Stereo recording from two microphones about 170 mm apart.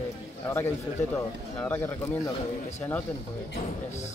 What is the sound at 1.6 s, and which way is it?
Speech, 10° left (ahead or behind).